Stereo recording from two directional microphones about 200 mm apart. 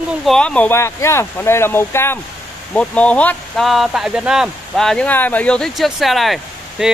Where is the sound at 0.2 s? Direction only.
5° left (ahead or behind).